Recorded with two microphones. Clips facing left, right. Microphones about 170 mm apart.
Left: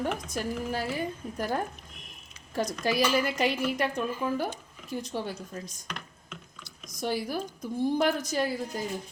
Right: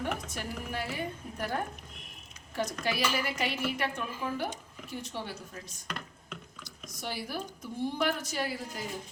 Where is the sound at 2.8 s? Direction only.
40° left (ahead or behind).